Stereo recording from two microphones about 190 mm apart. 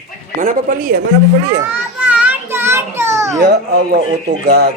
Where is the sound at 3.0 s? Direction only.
15° right (ahead or behind).